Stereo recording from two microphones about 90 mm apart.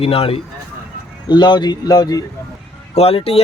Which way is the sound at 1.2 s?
55° left (ahead or behind).